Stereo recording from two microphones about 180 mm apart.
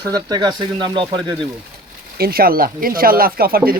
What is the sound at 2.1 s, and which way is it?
Speech, 55° right (ahead or behind).